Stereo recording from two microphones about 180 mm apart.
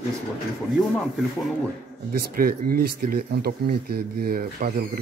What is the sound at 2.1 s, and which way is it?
Speech, 55° right (ahead or behind).